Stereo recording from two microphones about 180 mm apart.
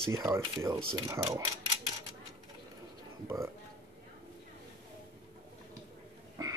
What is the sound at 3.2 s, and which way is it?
Speech, 15° right (ahead or behind).